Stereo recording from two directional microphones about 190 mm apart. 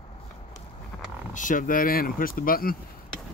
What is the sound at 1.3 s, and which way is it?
Speech, 45° left (ahead or behind).